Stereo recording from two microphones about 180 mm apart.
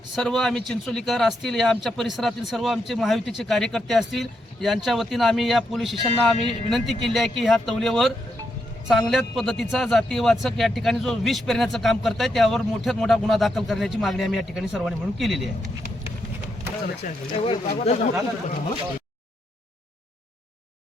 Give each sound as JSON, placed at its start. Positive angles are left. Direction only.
{"t": 0.2, "sound": "a man's voice", "side_deg": 0}
{"t": 17.4, "sound": "speech", "side_deg": 35}